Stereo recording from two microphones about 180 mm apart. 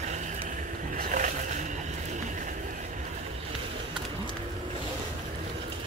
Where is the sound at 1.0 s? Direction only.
45° right (ahead or behind).